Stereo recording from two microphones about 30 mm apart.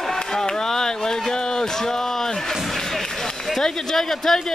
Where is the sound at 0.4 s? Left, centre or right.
Centre.